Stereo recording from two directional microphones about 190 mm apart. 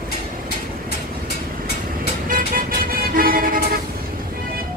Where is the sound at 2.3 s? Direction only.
50° right (ahead or behind).